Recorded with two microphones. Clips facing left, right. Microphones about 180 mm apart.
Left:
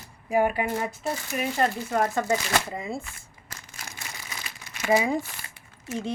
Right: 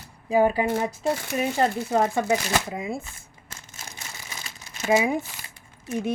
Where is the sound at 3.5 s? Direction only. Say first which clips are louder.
Even; 25° right (ahead or behind).